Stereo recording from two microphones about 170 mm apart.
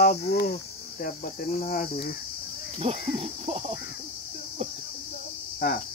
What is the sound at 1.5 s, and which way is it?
Cricket, 50° left (ahead or behind).